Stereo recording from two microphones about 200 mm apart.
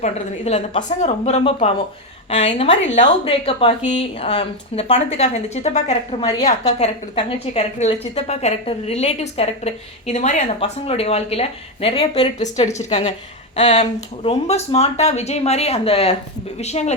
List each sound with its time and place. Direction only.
0.0 s a woman's voice: 30° left (ahead or behind)
6.7 s a woman's voice: 30° left (ahead or behind)